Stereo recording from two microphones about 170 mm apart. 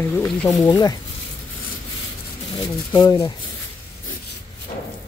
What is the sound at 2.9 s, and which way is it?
Speech, 25° left (ahead or behind).